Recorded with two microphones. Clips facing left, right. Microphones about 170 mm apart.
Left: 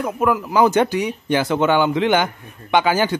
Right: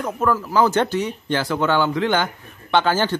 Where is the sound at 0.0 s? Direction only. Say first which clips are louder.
Left 2 dB; 15° left (ahead or behind).